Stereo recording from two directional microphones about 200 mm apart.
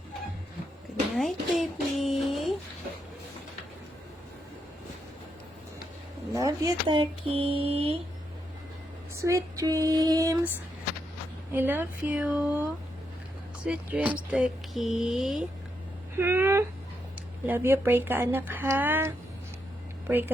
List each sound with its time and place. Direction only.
1.1 s speech: centre (ahead or behind)
6.3 s speech: 15° right (ahead or behind)
9.1 s speech: 15° right (ahead or behind)
11.5 s speech: 10° right (ahead or behind)
13.7 s speech: 5° right (ahead or behind)